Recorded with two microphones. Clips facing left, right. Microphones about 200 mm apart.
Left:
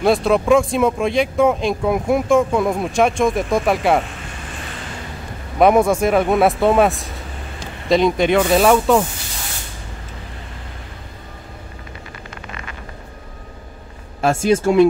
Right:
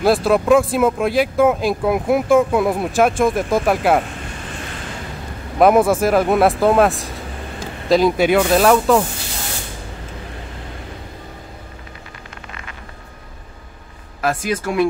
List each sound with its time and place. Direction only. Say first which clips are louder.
0.0 s speech: even; centre (ahead or behind)
5.6 s speech: right 1 dB; centre (ahead or behind)
14.2 s speech: left 5 dB; 25° left (ahead or behind)